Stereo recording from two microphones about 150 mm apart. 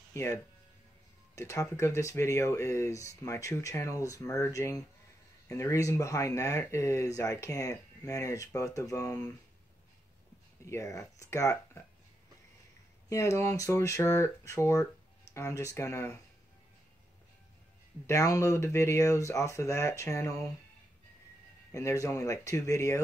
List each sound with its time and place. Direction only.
0.1 s speech: 20° left (ahead or behind)
10.6 s speech: 20° left (ahead or behind)
13.1 s speech: 20° left (ahead or behind)
18.0 s speech: 20° left (ahead or behind)
21.7 s speech: 20° left (ahead or behind)